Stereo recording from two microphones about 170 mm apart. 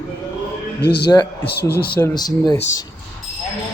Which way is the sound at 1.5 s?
70° left (ahead or behind).